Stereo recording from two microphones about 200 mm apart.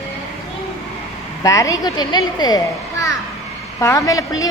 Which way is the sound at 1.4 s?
15° left (ahead or behind).